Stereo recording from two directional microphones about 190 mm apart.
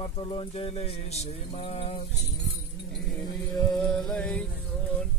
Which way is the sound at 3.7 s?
Centre (ahead or behind).